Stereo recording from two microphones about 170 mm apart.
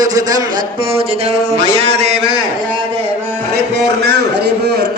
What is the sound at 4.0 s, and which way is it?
Speech, 75° right (ahead or behind).